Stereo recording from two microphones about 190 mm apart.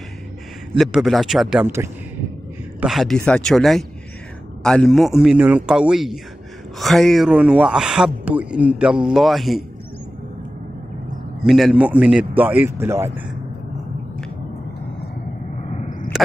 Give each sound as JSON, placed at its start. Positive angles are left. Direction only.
{"t": 0.7, "sound": "speech", "side_deg": 0}
{"t": 2.8, "sound": "speech", "side_deg": 0}
{"t": 11.4, "sound": "speech", "side_deg": 0}
{"t": 15.6, "sound": "a sound", "side_deg": 40}